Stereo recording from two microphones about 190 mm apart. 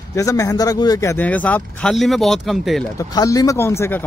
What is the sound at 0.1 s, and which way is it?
Speech, 15° left (ahead or behind).